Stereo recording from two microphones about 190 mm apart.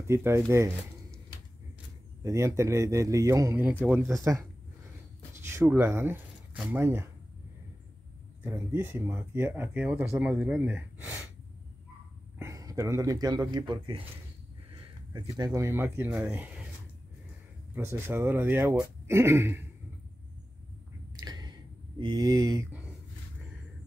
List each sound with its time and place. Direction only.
0.1 s speech: 15° right (ahead or behind)
2.2 s speech: 15° right (ahead or behind)
5.5 s speech: 15° right (ahead or behind)
8.5 s speech: 10° right (ahead or behind)
12.4 s speech: 15° right (ahead or behind)
17.7 s speech: 15° right (ahead or behind)
21.2 s a sound: 20° right (ahead or behind)